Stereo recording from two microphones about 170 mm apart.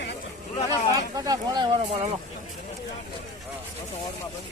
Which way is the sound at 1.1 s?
20° right (ahead or behind).